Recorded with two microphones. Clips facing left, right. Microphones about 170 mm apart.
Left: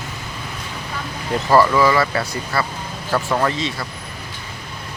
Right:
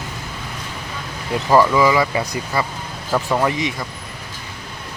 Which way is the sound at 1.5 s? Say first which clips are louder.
Even; 15° right (ahead or behind).